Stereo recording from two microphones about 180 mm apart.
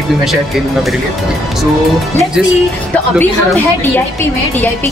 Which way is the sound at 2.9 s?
10° left (ahead or behind).